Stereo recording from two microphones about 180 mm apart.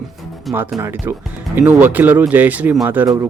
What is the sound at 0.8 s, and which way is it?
Speech, 15° right (ahead or behind).